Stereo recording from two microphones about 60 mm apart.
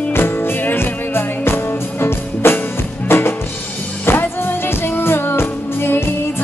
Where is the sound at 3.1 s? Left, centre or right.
Left.